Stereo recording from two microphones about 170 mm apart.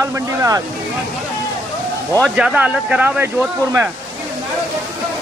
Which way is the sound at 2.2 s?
5° right (ahead or behind).